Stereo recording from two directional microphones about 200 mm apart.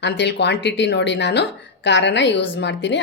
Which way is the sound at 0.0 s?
60° left (ahead or behind).